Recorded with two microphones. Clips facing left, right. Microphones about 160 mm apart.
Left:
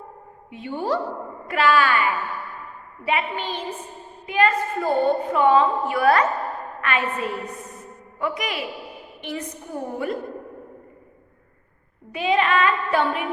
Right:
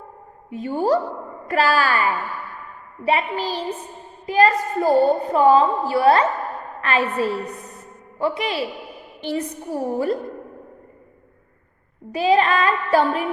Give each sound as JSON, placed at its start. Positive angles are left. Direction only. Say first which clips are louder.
{"t": 0.5, "sound": "a woman's voice", "louder": "right 5 dB", "side_deg": -40}
{"t": 12.1, "sound": "a woman's voice", "louder": "right 3 dB", "side_deg": -35}